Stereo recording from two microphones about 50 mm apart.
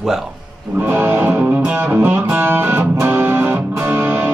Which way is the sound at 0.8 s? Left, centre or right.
Right.